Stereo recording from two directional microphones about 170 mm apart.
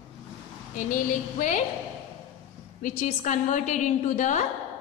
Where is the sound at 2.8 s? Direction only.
50° left (ahead or behind).